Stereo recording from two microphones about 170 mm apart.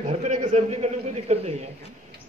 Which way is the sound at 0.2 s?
45° right (ahead or behind).